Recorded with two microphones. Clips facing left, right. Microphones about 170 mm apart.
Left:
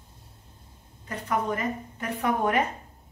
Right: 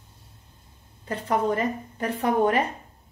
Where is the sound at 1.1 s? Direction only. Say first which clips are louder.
Right 4 dB; 30° right (ahead or behind).